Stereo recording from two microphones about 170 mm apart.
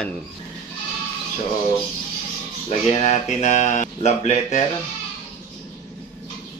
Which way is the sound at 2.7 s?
40° left (ahead or behind).